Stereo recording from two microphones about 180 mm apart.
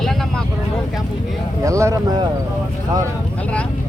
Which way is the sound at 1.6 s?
15° right (ahead or behind).